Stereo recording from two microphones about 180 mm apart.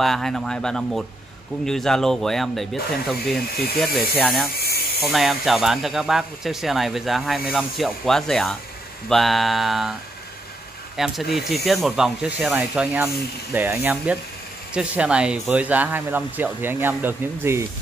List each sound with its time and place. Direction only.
0.0 s speech: centre (ahead or behind)
4.6 s a sound: 60° left (ahead or behind)
5.0 s speech: centre (ahead or behind)
11.0 s speech: centre (ahead or behind)